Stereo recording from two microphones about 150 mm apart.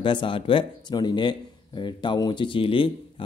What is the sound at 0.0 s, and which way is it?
Speech, 35° left (ahead or behind).